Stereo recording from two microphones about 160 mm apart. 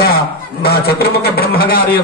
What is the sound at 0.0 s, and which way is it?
A man's voice, 75° left (ahead or behind).